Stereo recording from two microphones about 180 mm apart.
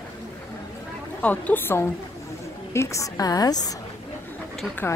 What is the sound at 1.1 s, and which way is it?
A woman's voice, 10° left (ahead or behind).